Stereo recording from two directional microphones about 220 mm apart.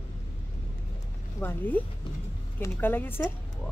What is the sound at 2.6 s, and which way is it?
Speech, 10° left (ahead or behind).